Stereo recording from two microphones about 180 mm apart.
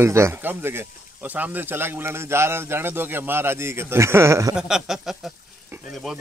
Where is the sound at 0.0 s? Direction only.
15° right (ahead or behind).